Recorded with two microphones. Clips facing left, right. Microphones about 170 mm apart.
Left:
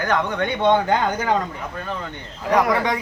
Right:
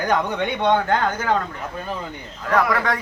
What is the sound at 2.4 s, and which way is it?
Speech, 15° left (ahead or behind).